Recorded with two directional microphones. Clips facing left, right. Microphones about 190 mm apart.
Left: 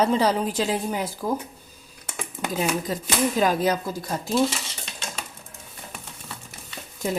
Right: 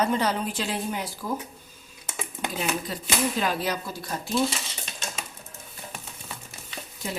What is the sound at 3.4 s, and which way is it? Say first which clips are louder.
Speech: left 6 dB; 45° left (ahead or behind).